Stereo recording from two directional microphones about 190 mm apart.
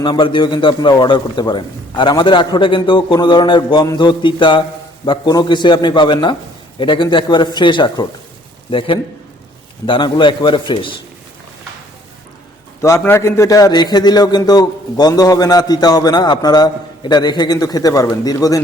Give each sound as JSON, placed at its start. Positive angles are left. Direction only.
{"t": 0.0, "sound": "a man's voice", "side_deg": 25}
{"t": 9.8, "sound": "a man's voice", "side_deg": 25}
{"t": 12.8, "sound": "a man's voice", "side_deg": 15}